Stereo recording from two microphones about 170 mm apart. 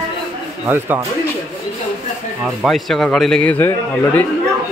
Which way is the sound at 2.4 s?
Centre (ahead or behind).